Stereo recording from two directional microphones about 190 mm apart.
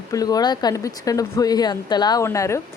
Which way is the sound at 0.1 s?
20° left (ahead or behind).